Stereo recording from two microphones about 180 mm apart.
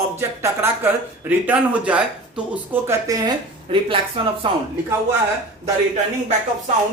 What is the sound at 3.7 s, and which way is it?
Speech, 30° right (ahead or behind).